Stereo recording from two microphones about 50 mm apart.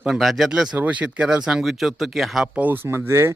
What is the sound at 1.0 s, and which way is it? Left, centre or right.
Speech, centre.